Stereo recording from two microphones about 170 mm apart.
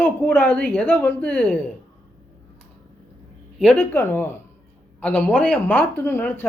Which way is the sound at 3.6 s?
10° left (ahead or behind).